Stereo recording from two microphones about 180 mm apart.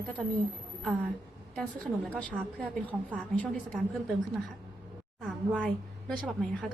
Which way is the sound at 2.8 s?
10° left (ahead or behind).